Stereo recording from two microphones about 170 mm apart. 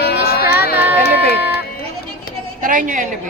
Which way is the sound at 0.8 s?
10° right (ahead or behind).